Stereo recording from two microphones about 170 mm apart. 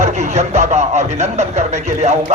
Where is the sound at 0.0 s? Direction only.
45° right (ahead or behind).